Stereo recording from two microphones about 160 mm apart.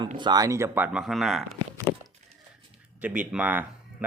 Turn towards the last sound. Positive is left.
turn(degrees=-10)  # may be behind; listen again after turning